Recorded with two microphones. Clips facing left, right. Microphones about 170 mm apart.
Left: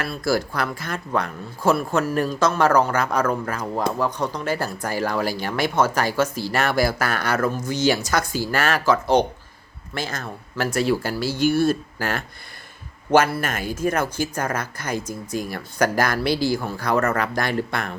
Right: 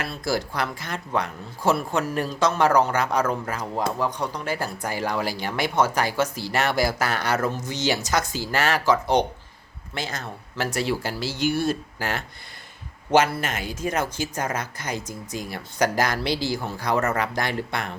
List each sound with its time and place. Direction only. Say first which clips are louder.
0.0 s speech: left 4 dB; 20° right (ahead or behind)
13.5 s speech: left 4 dB; 50° left (ahead or behind)
13.9 s speech: left 3 dB; 20° right (ahead or behind)